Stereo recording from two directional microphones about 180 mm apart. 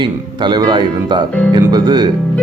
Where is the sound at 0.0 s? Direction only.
25° right (ahead or behind).